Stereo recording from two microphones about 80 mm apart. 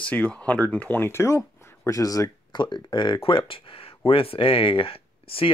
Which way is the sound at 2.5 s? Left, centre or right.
Left.